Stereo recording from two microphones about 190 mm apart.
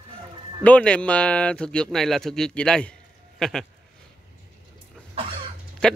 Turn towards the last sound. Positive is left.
turn(degrees=5)  # may be behind; listen again after turning